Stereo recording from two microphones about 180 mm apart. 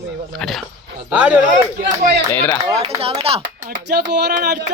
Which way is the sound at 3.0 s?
30° right (ahead or behind).